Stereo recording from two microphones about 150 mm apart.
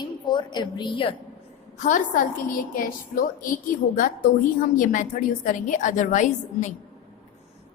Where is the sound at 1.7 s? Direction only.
55° left (ahead or behind).